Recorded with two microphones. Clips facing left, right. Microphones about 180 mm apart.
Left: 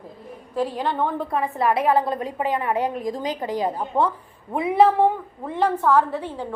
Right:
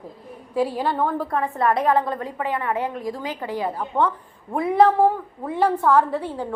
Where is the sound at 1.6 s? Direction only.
5° left (ahead or behind).